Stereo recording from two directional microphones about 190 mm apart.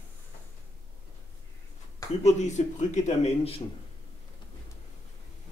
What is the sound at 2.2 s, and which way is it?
A man's voice, 40° left (ahead or behind).